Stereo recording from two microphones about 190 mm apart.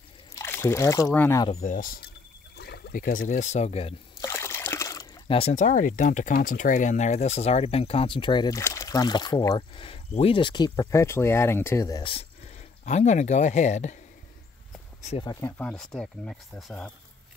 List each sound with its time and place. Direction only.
0.3 s speech: 15° left (ahead or behind)
1.5 s speech: 40° left (ahead or behind)
2.5 s speech: 60° left (ahead or behind); by 3.9 s 35° left (ahead or behind)
4.2 s trickle: 15° left (ahead or behind)
5.3 s speech: 35° left (ahead or behind)
12.8 s speech: 35° left (ahead or behind)
15.0 s speech: 35° left (ahead or behind)
15.2 s speech: 10° left (ahead or behind)